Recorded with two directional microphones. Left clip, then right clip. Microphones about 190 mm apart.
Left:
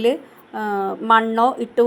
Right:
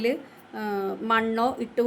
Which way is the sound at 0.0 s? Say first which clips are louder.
Left 7 dB; 20° left (ahead or behind).